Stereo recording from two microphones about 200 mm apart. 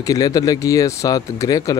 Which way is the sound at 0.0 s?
15° left (ahead or behind).